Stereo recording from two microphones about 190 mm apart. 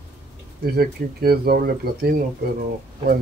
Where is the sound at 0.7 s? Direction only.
55° right (ahead or behind).